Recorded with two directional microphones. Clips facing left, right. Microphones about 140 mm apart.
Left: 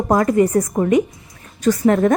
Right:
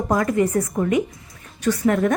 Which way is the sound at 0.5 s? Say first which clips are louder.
Left 4 dB; 40° left (ahead or behind).